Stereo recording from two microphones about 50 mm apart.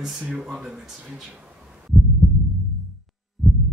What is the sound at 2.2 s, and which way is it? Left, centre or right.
Heart sounds, centre.